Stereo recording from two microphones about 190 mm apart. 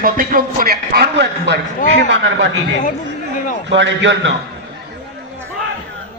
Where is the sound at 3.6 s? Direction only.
75° right (ahead or behind).